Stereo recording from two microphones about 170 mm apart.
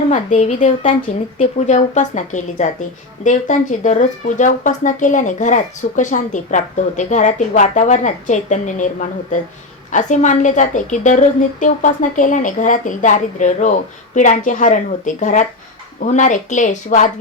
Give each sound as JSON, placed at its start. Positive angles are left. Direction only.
{"t": 0.1, "sound": "speech", "side_deg": 45}